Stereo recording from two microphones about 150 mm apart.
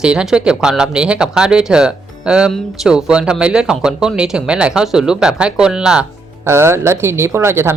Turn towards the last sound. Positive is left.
turn(degrees=-15)  # may be behind; listen again after turning